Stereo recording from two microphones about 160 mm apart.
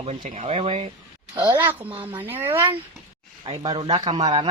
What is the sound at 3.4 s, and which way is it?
Speech, 35° right (ahead or behind).